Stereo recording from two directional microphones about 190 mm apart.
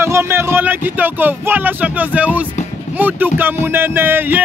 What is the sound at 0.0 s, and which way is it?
Speech, 15° right (ahead or behind).